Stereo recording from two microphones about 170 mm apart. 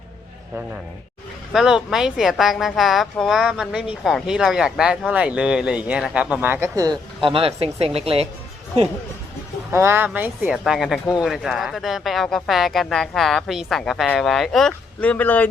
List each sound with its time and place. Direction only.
1.5 s speech: 5° right (ahead or behind)
7.2 s speech: 30° right (ahead or behind)
9.7 s speech: 15° right (ahead or behind)
10.6 s speech: centre (ahead or behind)